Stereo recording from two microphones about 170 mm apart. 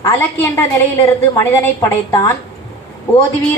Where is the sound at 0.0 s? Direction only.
15° left (ahead or behind).